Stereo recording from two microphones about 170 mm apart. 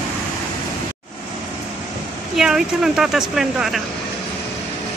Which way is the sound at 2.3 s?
5° right (ahead or behind).